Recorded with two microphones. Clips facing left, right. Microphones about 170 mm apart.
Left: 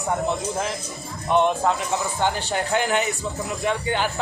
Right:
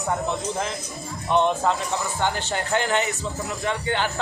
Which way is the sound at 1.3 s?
15° left (ahead or behind).